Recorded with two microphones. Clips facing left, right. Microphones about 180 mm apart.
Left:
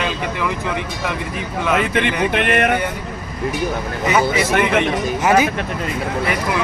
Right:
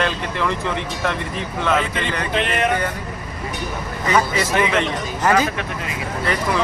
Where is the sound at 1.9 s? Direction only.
65° left (ahead or behind).